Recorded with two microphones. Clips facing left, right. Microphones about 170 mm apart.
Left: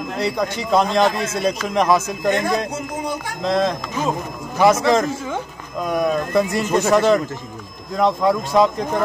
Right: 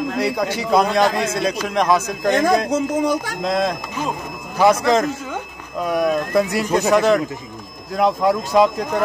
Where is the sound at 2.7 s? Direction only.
90° right.